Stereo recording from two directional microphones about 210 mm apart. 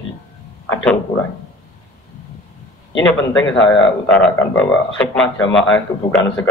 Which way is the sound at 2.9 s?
20° left (ahead or behind).